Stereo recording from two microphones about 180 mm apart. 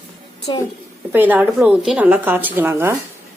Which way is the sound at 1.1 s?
10° right (ahead or behind).